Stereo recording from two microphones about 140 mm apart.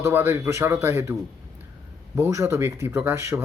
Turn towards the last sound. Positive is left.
turn(degrees=-20)  # may be behind; listen again after turning